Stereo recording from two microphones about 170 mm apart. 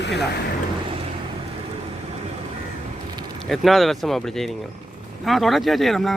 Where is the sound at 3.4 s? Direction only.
Centre (ahead or behind).